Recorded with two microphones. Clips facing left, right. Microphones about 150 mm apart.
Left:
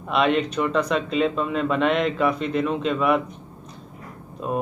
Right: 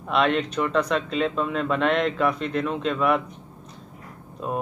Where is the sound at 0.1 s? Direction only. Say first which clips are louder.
Left 1 dB; 5° left (ahead or behind).